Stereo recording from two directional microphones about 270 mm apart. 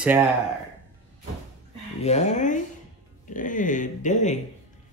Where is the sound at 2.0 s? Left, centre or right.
Left.